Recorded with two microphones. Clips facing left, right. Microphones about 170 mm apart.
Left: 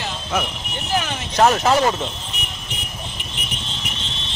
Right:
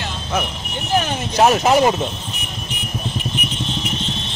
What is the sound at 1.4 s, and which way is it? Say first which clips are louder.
Speech: right 2 dB; 15° right (ahead or behind).